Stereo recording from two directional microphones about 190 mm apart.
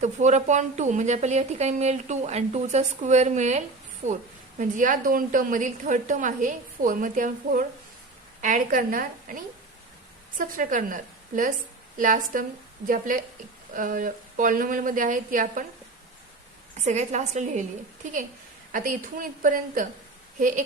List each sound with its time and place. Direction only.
0.0 s a woman's voice: 40° right (ahead or behind)
16.8 s speech: 35° right (ahead or behind)
18.7 s a woman's voice: 50° right (ahead or behind)